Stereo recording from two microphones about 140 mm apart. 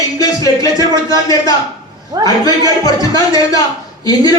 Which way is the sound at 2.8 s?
25° left (ahead or behind).